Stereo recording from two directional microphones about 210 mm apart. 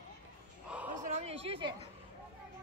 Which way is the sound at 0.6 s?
5° right (ahead or behind).